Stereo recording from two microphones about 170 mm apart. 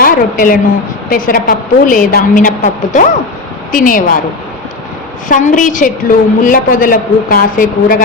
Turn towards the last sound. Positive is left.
turn(degrees=50)  # may be behind; listen again after turning